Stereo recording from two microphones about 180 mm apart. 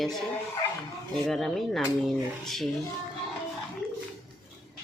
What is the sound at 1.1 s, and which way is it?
Speech, centre (ahead or behind).